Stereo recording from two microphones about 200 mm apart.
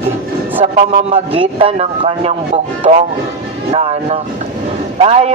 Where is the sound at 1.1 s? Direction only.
25° right (ahead or behind).